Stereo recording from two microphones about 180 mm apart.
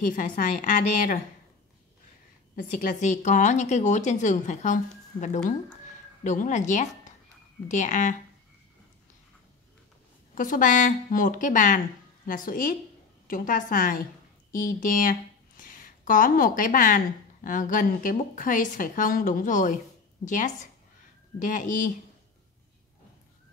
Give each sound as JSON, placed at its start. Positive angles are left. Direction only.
{"t": 0.0, "sound": "speech", "side_deg": 50}
{"t": 2.5, "sound": "a woman's voice", "side_deg": 50}
{"t": 10.3, "sound": "speech", "side_deg": 50}